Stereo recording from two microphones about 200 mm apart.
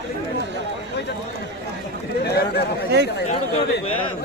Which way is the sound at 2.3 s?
55° left (ahead or behind).